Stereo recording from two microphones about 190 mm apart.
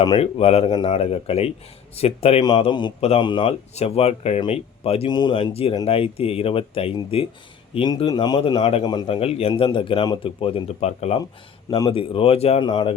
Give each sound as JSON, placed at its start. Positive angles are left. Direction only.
{"t": 0.0, "sound": "a man's voice", "side_deg": 30}